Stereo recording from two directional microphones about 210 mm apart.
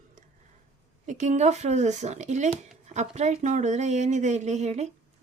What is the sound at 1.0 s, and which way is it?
Speech, 35° right (ahead or behind).